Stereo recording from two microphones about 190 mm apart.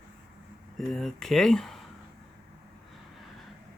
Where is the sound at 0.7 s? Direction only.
Centre (ahead or behind).